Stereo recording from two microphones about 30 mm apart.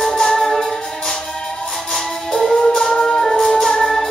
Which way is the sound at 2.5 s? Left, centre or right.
Centre.